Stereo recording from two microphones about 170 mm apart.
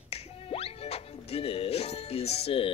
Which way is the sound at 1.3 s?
35° left (ahead or behind).